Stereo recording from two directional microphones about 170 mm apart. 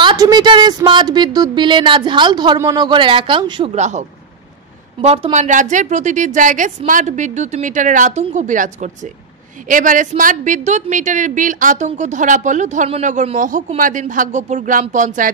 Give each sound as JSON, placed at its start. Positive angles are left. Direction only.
{"t": 0.0, "sound": "a woman's voice", "side_deg": -25}
{"t": 3.7, "sound": "speech", "side_deg": -45}
{"t": 5.0, "sound": "speech", "side_deg": -40}